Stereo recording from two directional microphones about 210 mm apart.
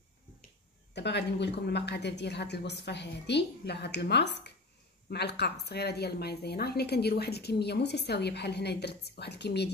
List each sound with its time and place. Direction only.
0.9 s a woman's voice: 55° left (ahead or behind)